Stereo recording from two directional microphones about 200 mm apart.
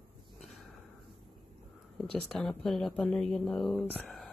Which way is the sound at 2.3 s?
Centre (ahead or behind).